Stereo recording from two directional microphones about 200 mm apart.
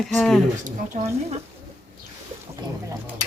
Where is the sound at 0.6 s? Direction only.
35° right (ahead or behind).